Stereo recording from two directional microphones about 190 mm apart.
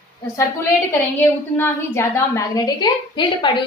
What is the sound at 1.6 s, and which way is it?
A woman's voice, 10° left (ahead or behind).